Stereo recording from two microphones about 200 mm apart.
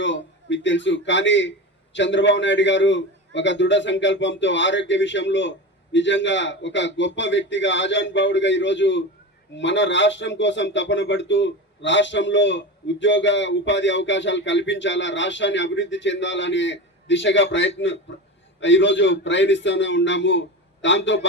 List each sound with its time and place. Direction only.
0.0 s speech: 65° left (ahead or behind)